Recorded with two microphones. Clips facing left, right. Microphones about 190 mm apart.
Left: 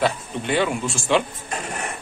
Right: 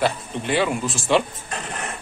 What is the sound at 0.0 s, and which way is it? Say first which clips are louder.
A man's voice: even; centre (ahead or behind).